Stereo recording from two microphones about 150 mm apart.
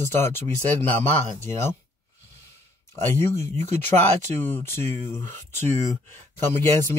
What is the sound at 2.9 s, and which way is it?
Speech, 15° left (ahead or behind).